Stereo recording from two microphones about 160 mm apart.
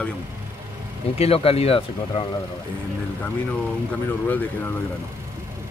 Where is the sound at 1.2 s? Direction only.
40° left (ahead or behind).